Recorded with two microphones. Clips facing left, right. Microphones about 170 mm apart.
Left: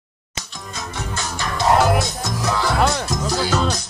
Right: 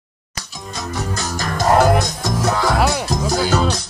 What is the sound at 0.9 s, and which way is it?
Music, 40° right (ahead or behind).